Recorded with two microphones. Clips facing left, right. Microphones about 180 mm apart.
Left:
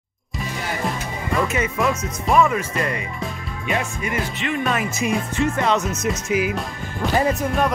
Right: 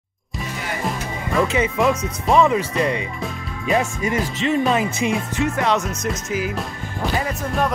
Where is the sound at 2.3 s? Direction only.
20° right (ahead or behind).